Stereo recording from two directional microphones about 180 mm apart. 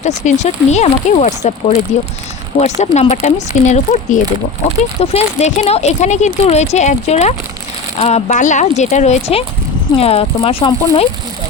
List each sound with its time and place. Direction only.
0.0 s speech: 40° left (ahead or behind)